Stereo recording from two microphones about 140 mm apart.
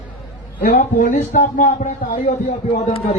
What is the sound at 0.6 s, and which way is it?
A man's voice, 75° left (ahead or behind).